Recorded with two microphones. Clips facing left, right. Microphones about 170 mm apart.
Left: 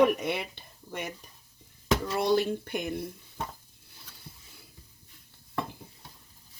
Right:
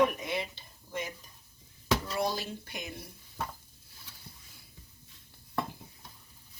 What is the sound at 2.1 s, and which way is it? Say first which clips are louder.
Speech: left 7 dB; 60° left (ahead or behind).